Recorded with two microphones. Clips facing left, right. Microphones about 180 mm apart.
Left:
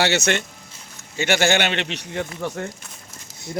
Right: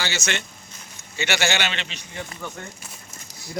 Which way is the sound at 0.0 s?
65° left (ahead or behind).